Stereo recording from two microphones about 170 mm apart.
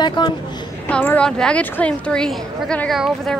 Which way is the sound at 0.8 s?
10° left (ahead or behind).